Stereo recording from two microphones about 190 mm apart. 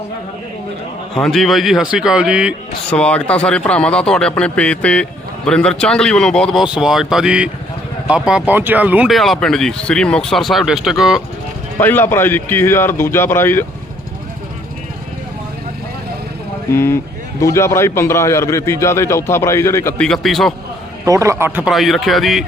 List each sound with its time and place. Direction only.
1.2 s speech: centre (ahead or behind)
2.9 s speech: 5° left (ahead or behind)
11.8 s a man's voice: 10° left (ahead or behind)
16.7 s a man's voice: 15° left (ahead or behind)
21.0 s speech: 15° right (ahead or behind); by 22.4 s centre (ahead or behind)